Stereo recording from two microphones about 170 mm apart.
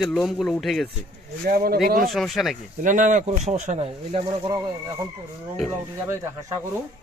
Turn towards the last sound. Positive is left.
turn(degrees=-15)  # may be behind; listen again after turning